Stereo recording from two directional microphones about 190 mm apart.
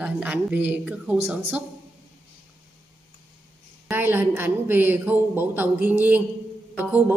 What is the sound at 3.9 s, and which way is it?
A woman's voice, 10° right (ahead or behind).